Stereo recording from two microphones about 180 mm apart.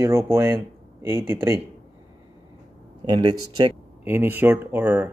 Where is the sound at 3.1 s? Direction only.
25° right (ahead or behind).